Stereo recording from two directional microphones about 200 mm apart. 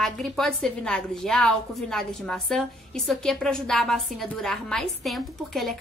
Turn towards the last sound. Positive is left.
turn(degrees=0)  # may be behind; listen again after turning